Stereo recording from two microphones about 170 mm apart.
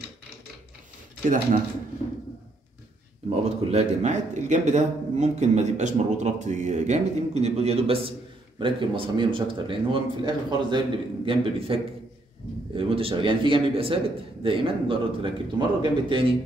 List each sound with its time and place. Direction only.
1.2 s speech: 55° right (ahead or behind)
3.3 s a man's voice: 35° right (ahead or behind)